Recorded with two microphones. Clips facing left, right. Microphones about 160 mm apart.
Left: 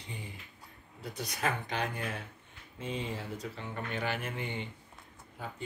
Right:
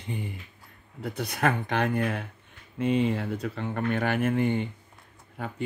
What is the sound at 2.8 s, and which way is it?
Speech, 70° right (ahead or behind).